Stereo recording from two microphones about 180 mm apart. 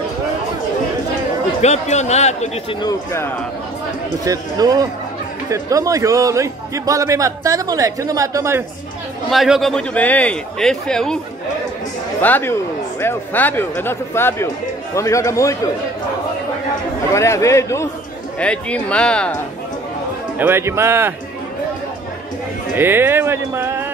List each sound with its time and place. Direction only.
1.6 s speech: 40° left (ahead or behind)
2.8 s speech: 15° left (ahead or behind)
4.2 s a man's voice: 20° right (ahead or behind)
9.3 s a man's voice: centre (ahead or behind)
12.2 s speech: 10° left (ahead or behind)
17.1 s speech: 15° left (ahead or behind)
20.3 s a man's voice: 15° right (ahead or behind)
22.8 s a man's voice: 10° right (ahead or behind)